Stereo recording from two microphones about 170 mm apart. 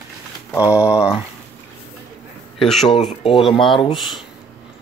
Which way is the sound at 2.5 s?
Centre (ahead or behind).